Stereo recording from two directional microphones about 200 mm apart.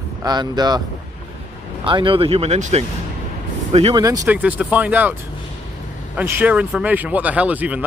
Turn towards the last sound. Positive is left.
turn(degrees=-5)  # may be behind; listen again after turning